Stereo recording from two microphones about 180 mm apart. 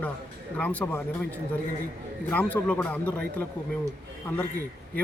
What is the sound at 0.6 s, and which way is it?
Speech, 10° left (ahead or behind).